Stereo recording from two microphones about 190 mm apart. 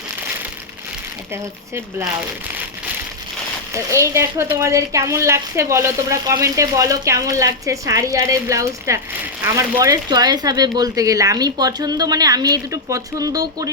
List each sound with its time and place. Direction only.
1.3 s speech: 15° right (ahead or behind)
3.7 s speech: 15° right (ahead or behind)